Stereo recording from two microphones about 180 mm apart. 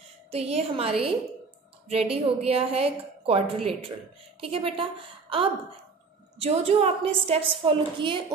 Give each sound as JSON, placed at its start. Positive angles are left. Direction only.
{"t": 0.3, "sound": "a woman's voice", "side_deg": -35}